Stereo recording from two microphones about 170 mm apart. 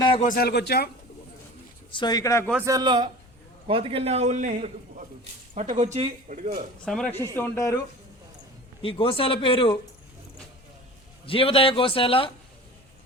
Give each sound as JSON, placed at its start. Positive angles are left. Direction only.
{"t": 0.2, "sound": "a man's voice", "side_deg": 55}
{"t": 1.9, "sound": "speech", "side_deg": 25}
{"t": 2.6, "sound": "a man's voice", "side_deg": -25}
{"t": 6.8, "sound": "speech", "side_deg": 5}
{"t": 8.8, "sound": "a man's voice", "side_deg": 30}
{"t": 11.3, "sound": "a man's voice", "side_deg": 35}